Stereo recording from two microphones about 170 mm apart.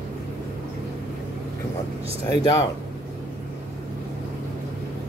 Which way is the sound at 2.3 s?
20° left (ahead or behind).